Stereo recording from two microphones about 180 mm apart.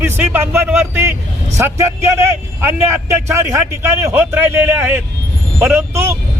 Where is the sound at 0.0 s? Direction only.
15° right (ahead or behind).